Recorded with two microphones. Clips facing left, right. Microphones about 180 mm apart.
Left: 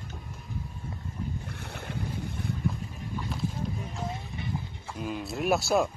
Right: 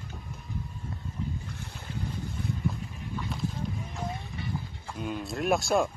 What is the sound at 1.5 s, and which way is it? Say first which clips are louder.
Boat: left 3 dB; 65° left (ahead or behind).